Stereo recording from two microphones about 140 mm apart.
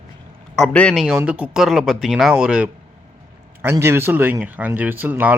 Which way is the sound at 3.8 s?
15° right (ahead or behind).